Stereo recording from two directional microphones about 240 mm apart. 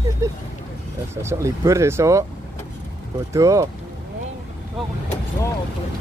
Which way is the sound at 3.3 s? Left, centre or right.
Centre.